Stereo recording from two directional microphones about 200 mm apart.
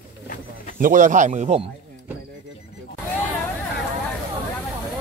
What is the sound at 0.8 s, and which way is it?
Speech, 40° right (ahead or behind).